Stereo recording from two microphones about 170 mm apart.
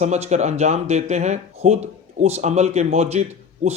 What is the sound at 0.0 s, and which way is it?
Speech, 40° right (ahead or behind).